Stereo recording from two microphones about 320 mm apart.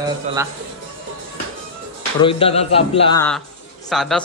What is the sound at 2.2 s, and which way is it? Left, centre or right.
Speech, centre.